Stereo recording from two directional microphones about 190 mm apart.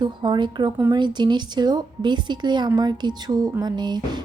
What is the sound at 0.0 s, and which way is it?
A woman's voice, 25° right (ahead or behind).